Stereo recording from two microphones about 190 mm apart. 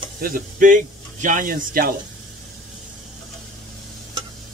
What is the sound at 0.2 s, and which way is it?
Speech, 45° right (ahead or behind).